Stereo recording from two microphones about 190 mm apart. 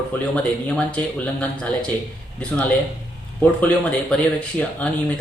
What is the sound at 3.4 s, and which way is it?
Speech, 5° left (ahead or behind).